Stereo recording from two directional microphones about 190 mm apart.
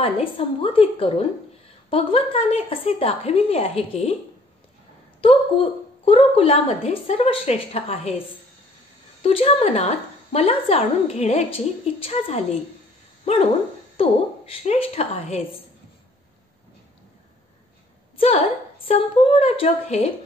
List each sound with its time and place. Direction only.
0.0 s a woman's voice: 30° left (ahead or behind)
5.2 s a woman's voice: 30° left (ahead or behind)
9.2 s a woman's voice: 30° left (ahead or behind)
13.2 s dog: 30° left (ahead or behind)
13.9 s a woman's voice: 30° left (ahead or behind)
18.9 s a woman's voice: 30° left (ahead or behind)